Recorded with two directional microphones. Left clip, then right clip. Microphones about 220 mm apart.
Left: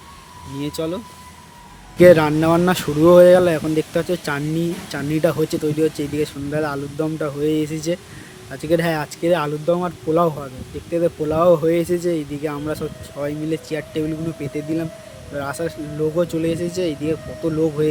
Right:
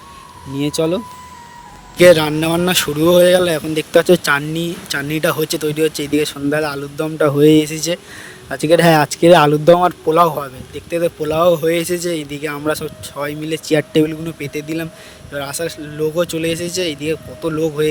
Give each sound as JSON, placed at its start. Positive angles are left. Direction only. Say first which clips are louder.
{"t": 0.6, "sound": "speech", "louder": "right 8 dB", "side_deg": -30}
{"t": 2.0, "sound": "speech", "louder": "right 2 dB", "side_deg": -45}